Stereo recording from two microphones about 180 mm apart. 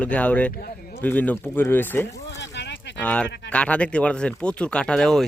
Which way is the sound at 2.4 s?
75° left (ahead or behind).